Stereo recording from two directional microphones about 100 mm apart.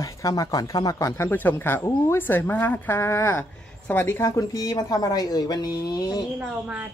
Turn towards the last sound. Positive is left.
turn(degrees=-15)  # may be behind; listen again after turning